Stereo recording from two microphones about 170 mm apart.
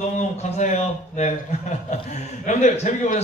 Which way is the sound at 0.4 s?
40° left (ahead or behind).